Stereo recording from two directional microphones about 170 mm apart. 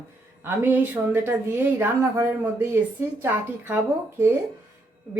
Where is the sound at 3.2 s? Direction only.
10° right (ahead or behind).